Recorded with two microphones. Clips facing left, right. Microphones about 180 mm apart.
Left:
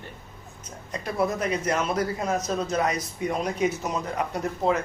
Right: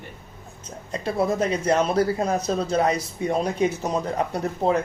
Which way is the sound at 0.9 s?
30° right (ahead or behind).